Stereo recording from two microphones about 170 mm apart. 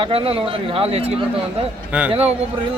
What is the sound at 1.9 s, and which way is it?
Speech, 10° right (ahead or behind).